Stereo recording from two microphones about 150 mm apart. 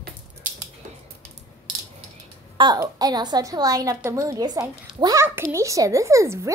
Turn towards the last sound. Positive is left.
turn(degrees=-20)  # may be behind; listen again after turning